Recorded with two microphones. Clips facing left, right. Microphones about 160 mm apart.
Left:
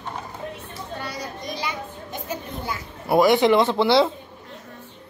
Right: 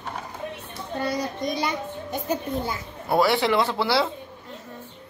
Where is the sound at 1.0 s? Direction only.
50° right (ahead or behind).